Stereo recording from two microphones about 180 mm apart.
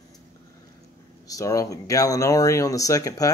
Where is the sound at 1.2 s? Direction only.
20° left (ahead or behind).